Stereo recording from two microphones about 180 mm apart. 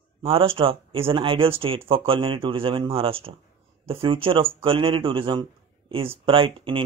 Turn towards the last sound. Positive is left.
turn(degrees=-30)  # may be behind; listen again after turning